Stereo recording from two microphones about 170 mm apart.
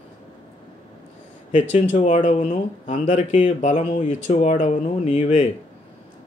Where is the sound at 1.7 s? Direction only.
40° left (ahead or behind).